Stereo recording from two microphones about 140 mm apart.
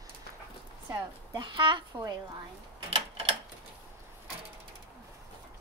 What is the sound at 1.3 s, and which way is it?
Speech, 35° right (ahead or behind).